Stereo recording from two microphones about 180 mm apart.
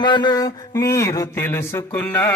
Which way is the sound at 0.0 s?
25° left (ahead or behind).